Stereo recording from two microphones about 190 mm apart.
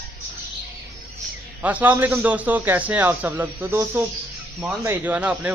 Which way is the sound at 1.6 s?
10° right (ahead or behind).